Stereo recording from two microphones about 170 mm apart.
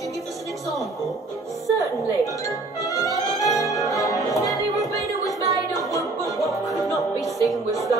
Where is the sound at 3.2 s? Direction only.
20° left (ahead or behind).